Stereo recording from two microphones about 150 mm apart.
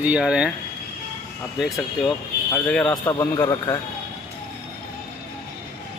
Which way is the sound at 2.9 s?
25° left (ahead or behind).